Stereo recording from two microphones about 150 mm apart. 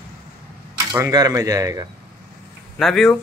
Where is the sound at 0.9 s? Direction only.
25° right (ahead or behind).